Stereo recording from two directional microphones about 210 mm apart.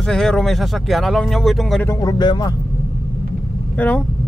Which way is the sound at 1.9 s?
20° left (ahead or behind).